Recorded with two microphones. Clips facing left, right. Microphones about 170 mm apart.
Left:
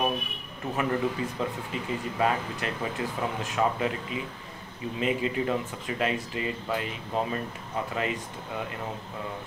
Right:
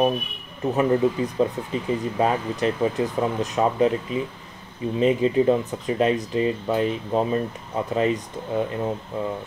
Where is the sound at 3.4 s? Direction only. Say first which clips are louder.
Right 6 dB; 35° right (ahead or behind).